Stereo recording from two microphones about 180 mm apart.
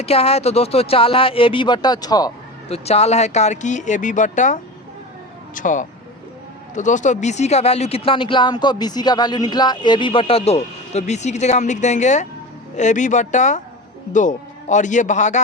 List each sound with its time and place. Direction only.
0.0 s speech: 35° left (ahead or behind)
2.6 s a man's voice: 35° left (ahead or behind)